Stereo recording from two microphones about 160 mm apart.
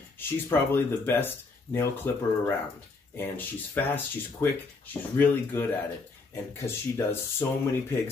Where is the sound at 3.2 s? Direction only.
10° left (ahead or behind).